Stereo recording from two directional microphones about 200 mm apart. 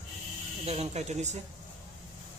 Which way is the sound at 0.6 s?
30° right (ahead or behind).